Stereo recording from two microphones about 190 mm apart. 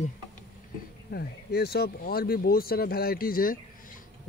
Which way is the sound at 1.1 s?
55° left (ahead or behind).